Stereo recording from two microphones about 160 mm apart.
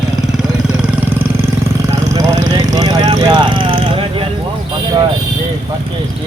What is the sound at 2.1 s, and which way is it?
Vehicle, 25° right (ahead or behind).